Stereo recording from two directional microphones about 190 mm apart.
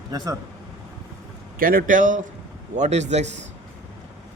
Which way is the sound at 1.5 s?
50° right (ahead or behind).